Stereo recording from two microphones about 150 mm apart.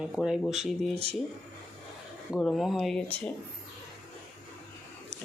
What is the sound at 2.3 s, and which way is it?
Speech, 5° left (ahead or behind).